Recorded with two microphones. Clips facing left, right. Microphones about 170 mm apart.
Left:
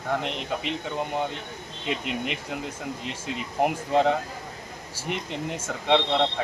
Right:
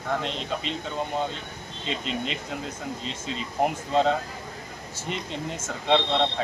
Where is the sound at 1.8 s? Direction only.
65° left (ahead or behind).